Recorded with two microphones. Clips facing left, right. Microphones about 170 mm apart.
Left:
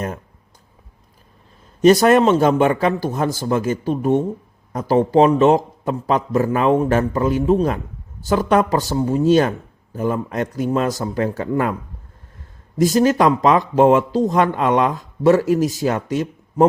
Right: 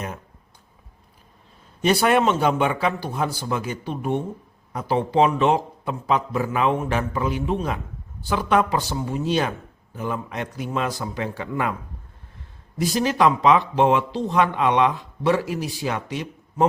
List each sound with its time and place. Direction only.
1.8 s speech: 40° left (ahead or behind)
12.7 s speech: 45° left (ahead or behind)